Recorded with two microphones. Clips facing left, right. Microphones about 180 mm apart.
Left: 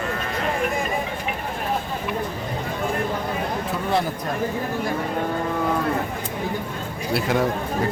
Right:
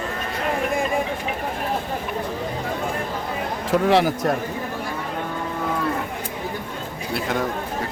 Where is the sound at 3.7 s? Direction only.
90° right.